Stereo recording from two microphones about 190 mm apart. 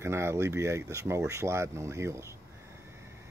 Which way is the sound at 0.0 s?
15° right (ahead or behind).